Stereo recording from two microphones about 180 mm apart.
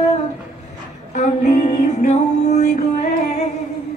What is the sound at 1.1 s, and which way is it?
Music, 40° left (ahead or behind).